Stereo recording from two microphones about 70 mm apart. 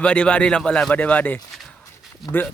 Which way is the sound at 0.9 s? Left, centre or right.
Left.